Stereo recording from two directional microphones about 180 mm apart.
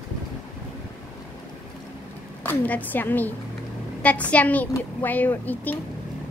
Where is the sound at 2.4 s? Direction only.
10° left (ahead or behind).